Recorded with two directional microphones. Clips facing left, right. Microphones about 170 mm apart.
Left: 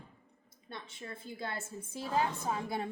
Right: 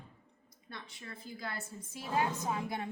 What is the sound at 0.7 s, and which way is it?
A woman's voice, 25° left (ahead or behind).